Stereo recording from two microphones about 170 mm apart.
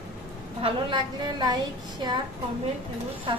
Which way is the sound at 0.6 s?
30° right (ahead or behind).